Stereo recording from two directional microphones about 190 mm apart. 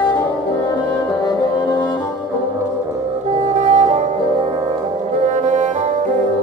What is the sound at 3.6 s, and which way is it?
Music, 35° right (ahead or behind).